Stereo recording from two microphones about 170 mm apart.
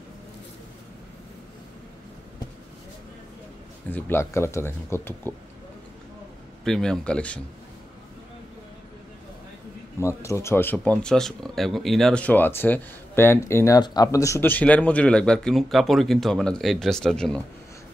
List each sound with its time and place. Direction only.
3.9 s speech: 15° left (ahead or behind)
6.6 s speech: 5° left (ahead or behind)
9.9 s speech: 15° left (ahead or behind)